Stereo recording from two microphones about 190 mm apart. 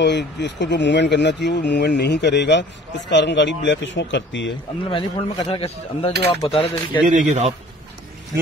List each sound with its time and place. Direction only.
0.0 s speech: 65° left (ahead or behind)
4.8 s speech: 25° left (ahead or behind)
7.1 s a man's voice: 40° right (ahead or behind)